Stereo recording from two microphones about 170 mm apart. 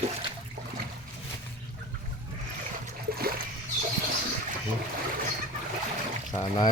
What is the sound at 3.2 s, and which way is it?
Splash, 60° right (ahead or behind).